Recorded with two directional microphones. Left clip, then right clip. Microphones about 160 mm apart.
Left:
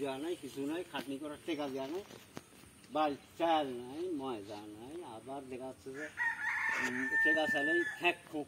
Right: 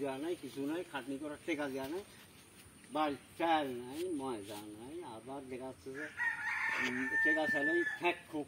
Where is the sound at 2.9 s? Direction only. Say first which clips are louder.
Left 2 dB; 5° right (ahead or behind).